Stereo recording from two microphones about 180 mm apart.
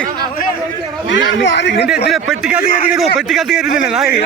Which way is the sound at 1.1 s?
85° left.